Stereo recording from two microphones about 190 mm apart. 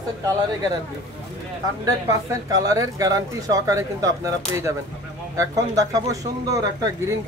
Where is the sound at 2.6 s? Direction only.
20° right (ahead or behind).